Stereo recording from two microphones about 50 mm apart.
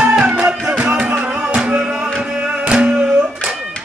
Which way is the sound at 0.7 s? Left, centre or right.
Right.